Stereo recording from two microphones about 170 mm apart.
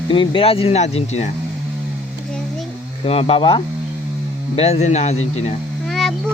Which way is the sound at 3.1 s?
35° left (ahead or behind).